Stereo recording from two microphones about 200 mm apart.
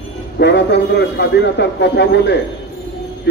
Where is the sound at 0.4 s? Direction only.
60° left (ahead or behind).